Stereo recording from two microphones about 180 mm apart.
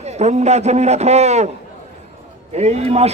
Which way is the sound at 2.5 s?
35° right (ahead or behind).